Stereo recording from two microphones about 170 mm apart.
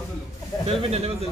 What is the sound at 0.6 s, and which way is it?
Speech, 35° right (ahead or behind).